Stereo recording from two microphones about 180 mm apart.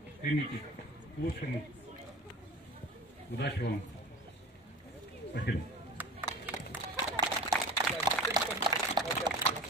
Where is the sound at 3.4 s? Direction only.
70° left (ahead or behind).